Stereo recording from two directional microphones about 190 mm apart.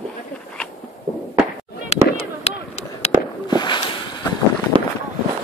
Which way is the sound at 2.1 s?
35° left (ahead or behind).